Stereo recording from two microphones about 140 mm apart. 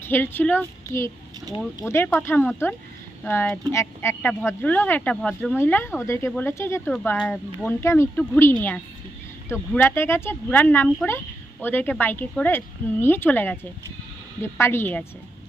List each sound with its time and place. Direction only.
0.0 s a woman's voice: 15° left (ahead or behind)
5.3 s speech: 5° right (ahead or behind)
5.5 s a woman's voice: 15° left (ahead or behind)